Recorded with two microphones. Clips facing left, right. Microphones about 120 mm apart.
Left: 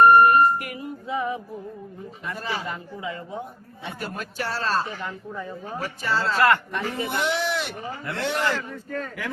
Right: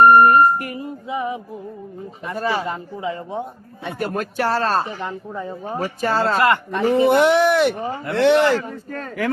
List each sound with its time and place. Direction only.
0.0 s music: 40° right (ahead or behind)
1.0 s music: 15° right (ahead or behind)
2.3 s speech: 55° right (ahead or behind)
2.6 s a woman's voice: 25° right (ahead or behind)
3.8 s speech: 55° right (ahead or behind)
4.9 s a woman's voice: 20° right (ahead or behind)
6.0 s speech: 50° right (ahead or behind)
6.4 s a woman's voice: 20° right (ahead or behind)
7.1 s speech: 55° right (ahead or behind)
8.1 s speech: 70° right (ahead or behind)
8.9 s speech: 45° right (ahead or behind)